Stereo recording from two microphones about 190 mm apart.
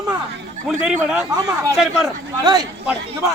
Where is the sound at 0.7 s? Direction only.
5° right (ahead or behind).